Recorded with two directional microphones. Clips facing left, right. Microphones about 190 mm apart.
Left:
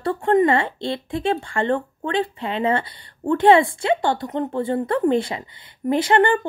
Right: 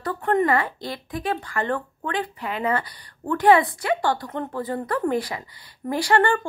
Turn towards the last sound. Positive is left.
turn(degrees=20)  # may be behind; listen again after turning